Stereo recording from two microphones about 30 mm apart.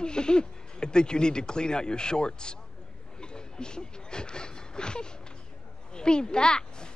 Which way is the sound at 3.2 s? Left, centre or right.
Left.